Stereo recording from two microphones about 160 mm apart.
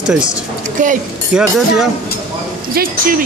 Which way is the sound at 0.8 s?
55° right (ahead or behind).